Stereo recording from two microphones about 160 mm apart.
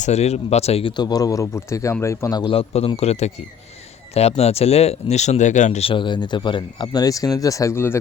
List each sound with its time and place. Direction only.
0.0 s speech: 45° left (ahead or behind); by 7.9 s 15° left (ahead or behind)